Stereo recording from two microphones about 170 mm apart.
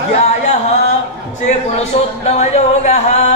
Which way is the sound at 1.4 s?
40° left (ahead or behind).